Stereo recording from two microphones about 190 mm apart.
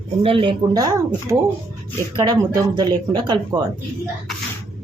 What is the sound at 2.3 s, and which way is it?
Speech, 20° right (ahead or behind).